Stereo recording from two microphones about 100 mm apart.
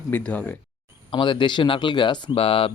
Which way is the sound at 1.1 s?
55° left (ahead or behind).